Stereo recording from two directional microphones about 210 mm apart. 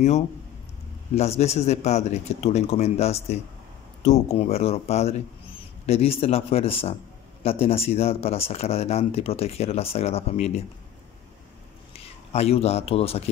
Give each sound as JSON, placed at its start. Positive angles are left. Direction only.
{"t": 1.4, "sound": "speech", "side_deg": 30}
{"t": 11.9, "sound": "speech", "side_deg": 30}